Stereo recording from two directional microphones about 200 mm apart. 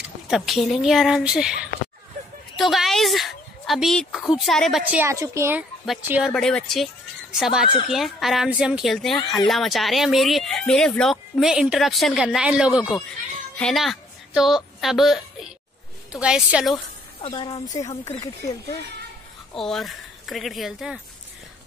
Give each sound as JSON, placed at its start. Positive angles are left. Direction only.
{"t": 0.3, "sound": "speech", "side_deg": 0}
{"t": 5.0, "sound": "a woman's voice", "side_deg": -15}
{"t": 16.7, "sound": "speech", "side_deg": 20}
{"t": 19.5, "sound": "speech", "side_deg": 0}